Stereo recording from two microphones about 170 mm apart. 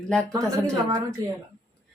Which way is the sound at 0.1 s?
Centre (ahead or behind).